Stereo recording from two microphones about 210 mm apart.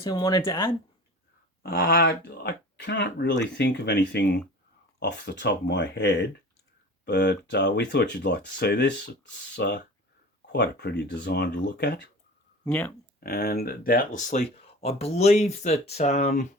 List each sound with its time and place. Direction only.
0.0 s speech: 20° left (ahead or behind)
1.6 s speech: 50° left (ahead or behind)
12.6 s speech: 5° left (ahead or behind)
13.1 s speech: 45° left (ahead or behind)